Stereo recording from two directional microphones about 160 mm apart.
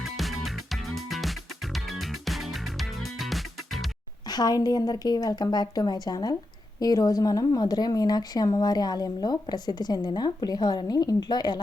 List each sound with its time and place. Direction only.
0.0 s music: centre (ahead or behind)
4.3 s speech: 25° left (ahead or behind)